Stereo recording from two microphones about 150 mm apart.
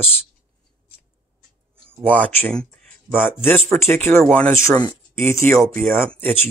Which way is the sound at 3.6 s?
15° left (ahead or behind).